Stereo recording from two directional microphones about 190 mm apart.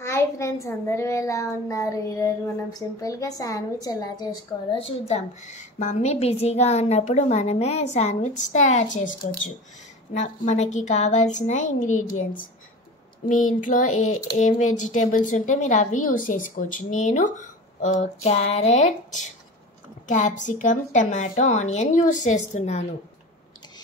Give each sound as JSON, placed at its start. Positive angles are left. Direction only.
{"t": 0.0, "sound": "a child's voice", "side_deg": 15}
{"t": 5.0, "sound": "a woman's voice", "side_deg": 35}
{"t": 13.3, "sound": "child singing", "side_deg": 45}
{"t": 14.4, "sound": "a woman's voice", "side_deg": 40}